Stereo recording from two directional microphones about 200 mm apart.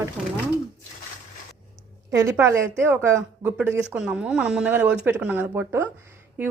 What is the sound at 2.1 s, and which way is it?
Speech, 15° right (ahead or behind).